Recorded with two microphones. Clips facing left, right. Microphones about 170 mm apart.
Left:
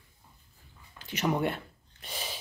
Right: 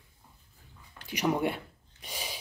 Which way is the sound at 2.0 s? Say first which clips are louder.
Left 1 dB; 10° right (ahead or behind).